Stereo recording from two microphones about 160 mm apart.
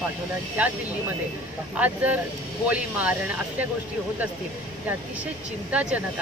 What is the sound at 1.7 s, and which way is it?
Speech, 10° right (ahead or behind).